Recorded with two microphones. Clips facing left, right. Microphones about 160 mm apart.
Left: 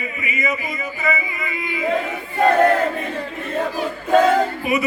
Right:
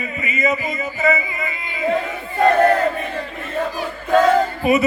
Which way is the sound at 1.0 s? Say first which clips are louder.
Right 5 dB; 25° right (ahead or behind).